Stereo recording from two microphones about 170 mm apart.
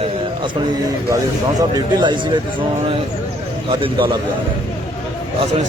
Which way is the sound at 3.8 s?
30° right (ahead or behind).